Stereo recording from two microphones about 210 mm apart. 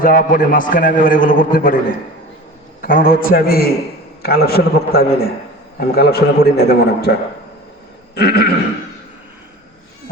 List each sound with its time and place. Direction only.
0.0 s a man's voice: 40° left (ahead or behind)
2.8 s a man's voice: 45° left (ahead or behind)